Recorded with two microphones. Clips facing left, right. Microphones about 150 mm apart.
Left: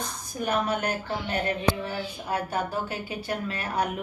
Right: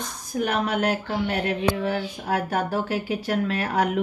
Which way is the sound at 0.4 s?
75° right (ahead or behind).